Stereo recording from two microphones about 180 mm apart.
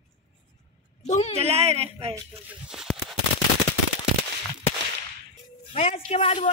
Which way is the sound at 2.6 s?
Centre (ahead or behind).